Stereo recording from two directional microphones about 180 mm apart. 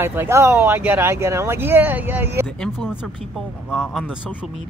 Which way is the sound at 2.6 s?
Centre (ahead or behind).